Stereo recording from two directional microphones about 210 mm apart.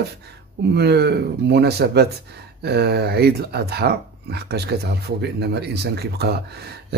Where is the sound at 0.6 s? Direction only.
50° right (ahead or behind).